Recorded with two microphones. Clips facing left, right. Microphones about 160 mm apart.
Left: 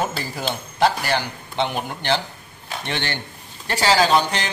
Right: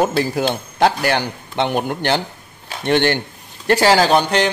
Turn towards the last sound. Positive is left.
turn(degrees=-60)  # may be behind; listen again after turning